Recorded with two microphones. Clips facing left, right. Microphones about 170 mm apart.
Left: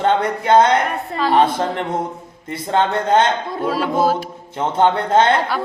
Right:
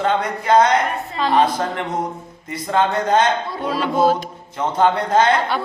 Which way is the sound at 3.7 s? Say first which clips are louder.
Even; 5° left (ahead or behind).